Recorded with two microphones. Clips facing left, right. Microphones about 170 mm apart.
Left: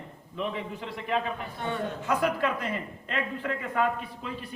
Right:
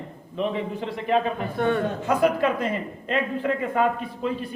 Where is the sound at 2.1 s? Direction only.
25° right (ahead or behind).